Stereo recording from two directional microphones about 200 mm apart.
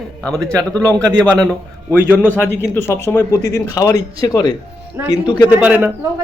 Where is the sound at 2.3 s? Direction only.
10° left (ahead or behind).